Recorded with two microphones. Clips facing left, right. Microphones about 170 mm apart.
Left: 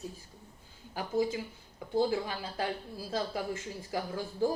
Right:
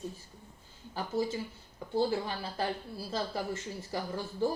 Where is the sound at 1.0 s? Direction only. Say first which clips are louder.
Left 2 dB; 10° left (ahead or behind).